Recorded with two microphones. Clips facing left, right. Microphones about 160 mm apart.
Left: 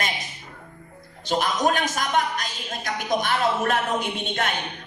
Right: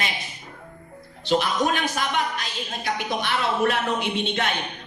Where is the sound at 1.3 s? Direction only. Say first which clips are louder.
Even; 45° left (ahead or behind).